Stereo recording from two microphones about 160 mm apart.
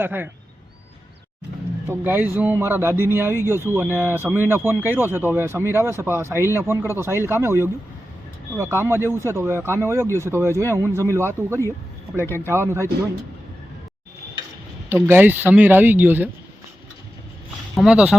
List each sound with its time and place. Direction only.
0.0 s speech: 10° right (ahead or behind)
1.9 s speech: 10° right (ahead or behind)
15.0 s speech: 10° right (ahead or behind)
17.7 s speech: 5° right (ahead or behind)